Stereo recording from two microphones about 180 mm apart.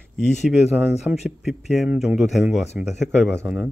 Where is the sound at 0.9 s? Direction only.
35° left (ahead or behind).